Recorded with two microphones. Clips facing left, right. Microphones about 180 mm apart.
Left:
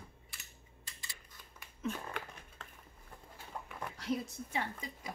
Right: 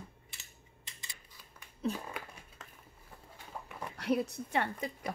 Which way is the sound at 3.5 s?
5° right (ahead or behind).